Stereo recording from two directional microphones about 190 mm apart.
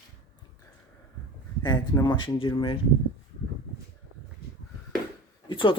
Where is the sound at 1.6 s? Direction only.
20° left (ahead or behind).